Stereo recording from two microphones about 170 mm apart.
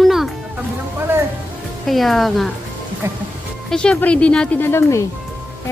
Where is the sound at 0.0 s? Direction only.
Centre (ahead or behind).